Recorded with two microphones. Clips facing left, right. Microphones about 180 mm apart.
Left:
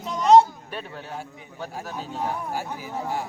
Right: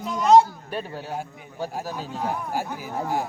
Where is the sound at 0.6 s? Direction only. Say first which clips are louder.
Right 4 dB; 40° right (ahead or behind).